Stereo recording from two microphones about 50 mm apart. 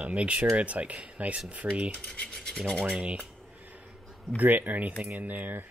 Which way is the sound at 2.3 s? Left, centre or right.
Centre.